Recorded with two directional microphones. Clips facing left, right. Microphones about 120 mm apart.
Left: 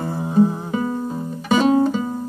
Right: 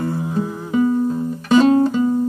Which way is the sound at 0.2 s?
30° left (ahead or behind).